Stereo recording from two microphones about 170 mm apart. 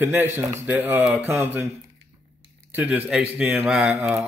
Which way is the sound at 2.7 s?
10° right (ahead or behind).